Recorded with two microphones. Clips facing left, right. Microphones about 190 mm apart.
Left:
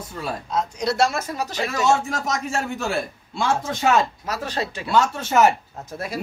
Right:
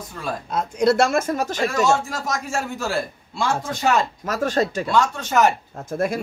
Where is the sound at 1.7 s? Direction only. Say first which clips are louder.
Left 2 dB; centre (ahead or behind).